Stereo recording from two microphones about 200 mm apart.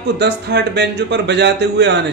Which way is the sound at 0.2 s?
55° right (ahead or behind).